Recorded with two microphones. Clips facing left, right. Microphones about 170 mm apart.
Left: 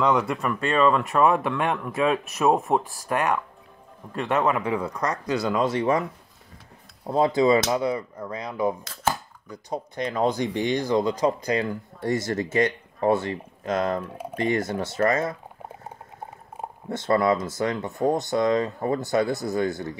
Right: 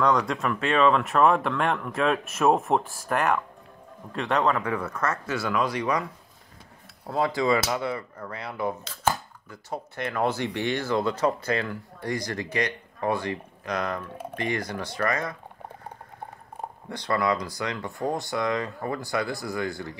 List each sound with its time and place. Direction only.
0.0 s speech: 5° left (ahead or behind); by 6.0 s 25° left (ahead or behind)
7.1 s speech: 20° left (ahead or behind)
16.9 s speech: 25° left (ahead or behind)